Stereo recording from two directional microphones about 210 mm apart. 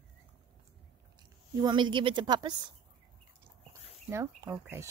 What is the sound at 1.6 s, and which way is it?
Speech, 20° right (ahead or behind).